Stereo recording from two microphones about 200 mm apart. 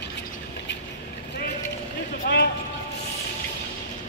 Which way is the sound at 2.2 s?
55° left (ahead or behind).